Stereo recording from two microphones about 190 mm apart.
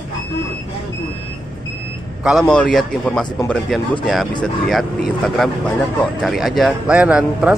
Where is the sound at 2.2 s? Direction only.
Centre (ahead or behind).